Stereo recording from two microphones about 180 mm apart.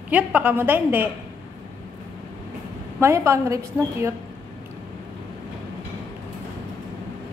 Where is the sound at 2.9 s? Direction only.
15° right (ahead or behind).